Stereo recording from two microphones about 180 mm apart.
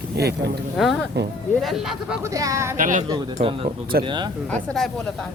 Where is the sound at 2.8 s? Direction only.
45° right (ahead or behind).